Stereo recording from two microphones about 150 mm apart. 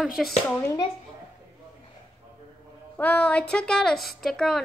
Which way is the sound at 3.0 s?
10° left (ahead or behind).